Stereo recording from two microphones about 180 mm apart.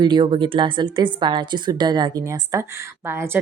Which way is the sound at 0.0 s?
25° right (ahead or behind).